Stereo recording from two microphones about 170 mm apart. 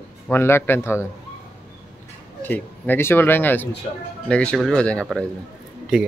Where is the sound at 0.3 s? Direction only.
15° left (ahead or behind).